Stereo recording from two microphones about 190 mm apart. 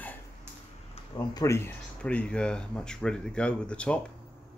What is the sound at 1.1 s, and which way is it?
Speech, 20° left (ahead or behind).